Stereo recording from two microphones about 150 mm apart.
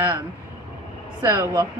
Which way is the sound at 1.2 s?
20° right (ahead or behind).